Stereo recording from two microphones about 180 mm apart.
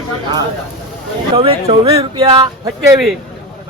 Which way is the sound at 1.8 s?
20° right (ahead or behind).